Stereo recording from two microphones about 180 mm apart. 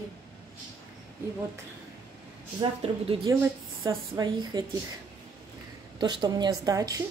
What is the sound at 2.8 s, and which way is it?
Speech, 30° right (ahead or behind).